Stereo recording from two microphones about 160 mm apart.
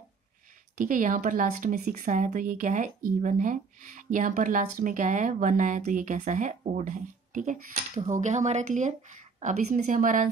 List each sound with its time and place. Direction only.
0.7 s speech: 55° right (ahead or behind)